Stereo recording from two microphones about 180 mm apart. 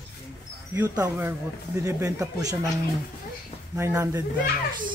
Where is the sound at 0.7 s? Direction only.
20° right (ahead or behind).